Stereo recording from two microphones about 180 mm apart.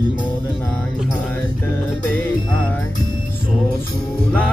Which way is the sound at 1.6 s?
10° left (ahead or behind).